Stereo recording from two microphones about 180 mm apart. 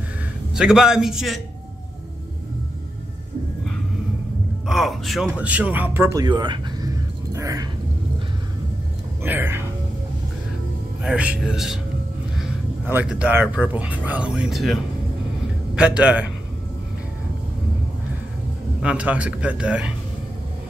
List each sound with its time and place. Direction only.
0.6 s speech: 5° right (ahead or behind)
4.6 s a man's voice: centre (ahead or behind)
6.2 s speech: 25° right (ahead or behind)
7.3 s a sound: 20° right (ahead or behind)
9.2 s speech: 10° right (ahead or behind)
11.0 s speech: 5° right (ahead or behind)
18.8 s a man's voice: 5° right (ahead or behind)